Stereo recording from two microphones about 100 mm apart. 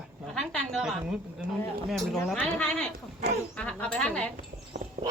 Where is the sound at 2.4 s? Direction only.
10° left (ahead or behind).